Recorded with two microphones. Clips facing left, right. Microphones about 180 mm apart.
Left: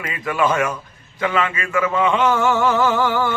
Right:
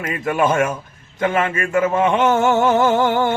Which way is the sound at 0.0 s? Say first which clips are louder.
Right 2 dB; 45° right (ahead or behind).